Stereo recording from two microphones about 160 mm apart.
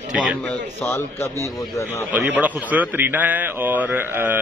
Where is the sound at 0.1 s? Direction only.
5° right (ahead or behind).